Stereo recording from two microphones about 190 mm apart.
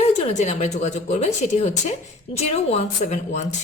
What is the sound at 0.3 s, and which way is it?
Speech, 35° left (ahead or behind).